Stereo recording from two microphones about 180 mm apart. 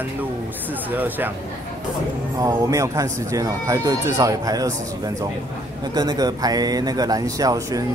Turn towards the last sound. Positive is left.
turn(degrees=-20)  # may be behind; listen again after turning